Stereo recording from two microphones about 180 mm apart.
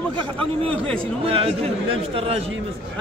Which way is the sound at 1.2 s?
35° right (ahead or behind).